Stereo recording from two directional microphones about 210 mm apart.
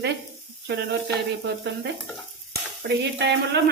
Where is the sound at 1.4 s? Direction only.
55° right (ahead or behind).